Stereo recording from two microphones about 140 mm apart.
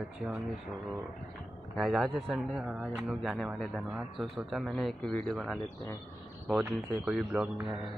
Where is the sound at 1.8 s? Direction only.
Centre (ahead or behind).